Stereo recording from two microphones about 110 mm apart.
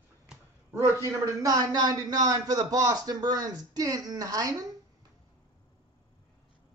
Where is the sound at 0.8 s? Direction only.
25° right (ahead or behind).